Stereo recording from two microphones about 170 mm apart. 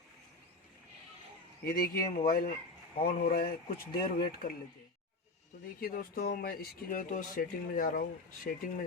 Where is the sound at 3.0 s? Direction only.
60° left (ahead or behind).